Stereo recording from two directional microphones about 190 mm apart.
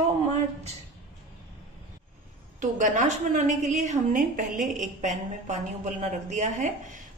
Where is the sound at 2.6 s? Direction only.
40° right (ahead or behind).